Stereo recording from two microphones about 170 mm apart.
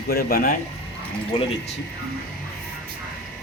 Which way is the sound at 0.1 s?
65° left (ahead or behind).